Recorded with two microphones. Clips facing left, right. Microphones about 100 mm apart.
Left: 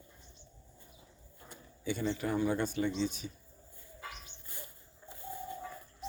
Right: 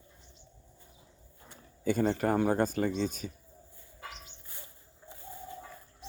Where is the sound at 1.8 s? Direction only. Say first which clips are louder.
Right 6 dB; 45° right (ahead or behind).